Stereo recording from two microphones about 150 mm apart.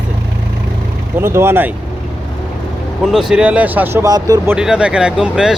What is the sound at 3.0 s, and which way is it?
Speech, centre (ahead or behind).